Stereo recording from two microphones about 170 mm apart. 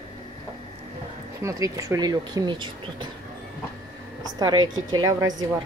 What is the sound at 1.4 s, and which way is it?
Speech, 20° right (ahead or behind).